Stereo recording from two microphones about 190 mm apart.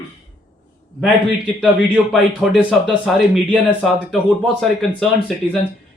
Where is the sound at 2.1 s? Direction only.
Centre (ahead or behind).